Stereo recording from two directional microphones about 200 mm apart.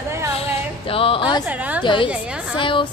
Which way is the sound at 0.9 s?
25° left (ahead or behind).